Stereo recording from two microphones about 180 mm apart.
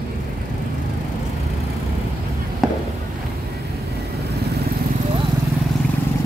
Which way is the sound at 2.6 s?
Centre (ahead or behind).